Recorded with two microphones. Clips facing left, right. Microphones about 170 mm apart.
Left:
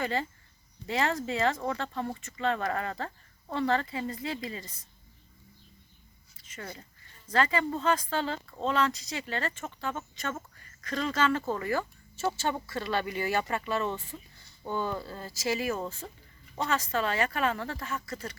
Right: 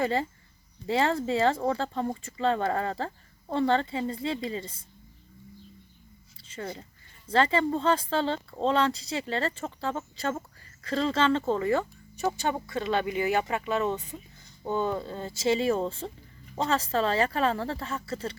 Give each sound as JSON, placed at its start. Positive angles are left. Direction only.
{"t": 0.0, "sound": "speech", "side_deg": -30}
{"t": 6.3, "sound": "a sound", "side_deg": -30}
{"t": 7.3, "sound": "speech", "side_deg": -30}